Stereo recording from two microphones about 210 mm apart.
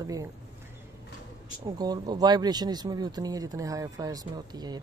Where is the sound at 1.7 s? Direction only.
20° right (ahead or behind).